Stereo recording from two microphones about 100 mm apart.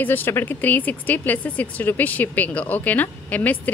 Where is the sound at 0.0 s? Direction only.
20° left (ahead or behind).